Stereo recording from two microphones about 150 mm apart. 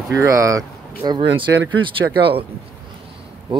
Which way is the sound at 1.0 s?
35° right (ahead or behind).